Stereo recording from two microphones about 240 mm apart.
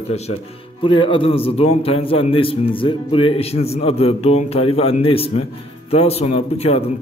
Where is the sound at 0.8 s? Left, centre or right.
Left.